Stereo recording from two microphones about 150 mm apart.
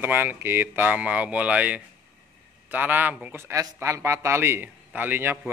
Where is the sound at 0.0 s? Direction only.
15° right (ahead or behind).